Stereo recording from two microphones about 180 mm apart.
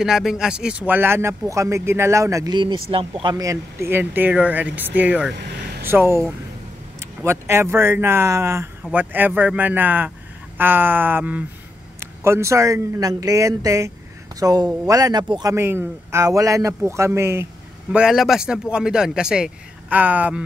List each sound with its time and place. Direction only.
0.0 s speech: centre (ahead or behind)
7.2 s speech: 15° right (ahead or behind)
15.5 s speech: 15° right (ahead or behind)
17.9 s speech: centre (ahead or behind)